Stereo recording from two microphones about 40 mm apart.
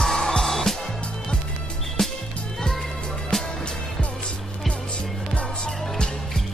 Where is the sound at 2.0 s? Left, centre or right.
Centre.